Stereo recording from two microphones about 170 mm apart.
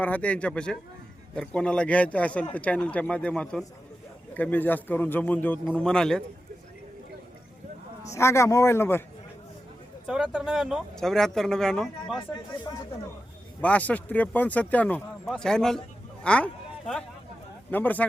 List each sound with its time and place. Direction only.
0.0 s speech: 10° left (ahead or behind)
8.1 s speech: 15° left (ahead or behind)
10.1 s speech: 5° right (ahead or behind)
13.6 s speech: 10° left (ahead or behind)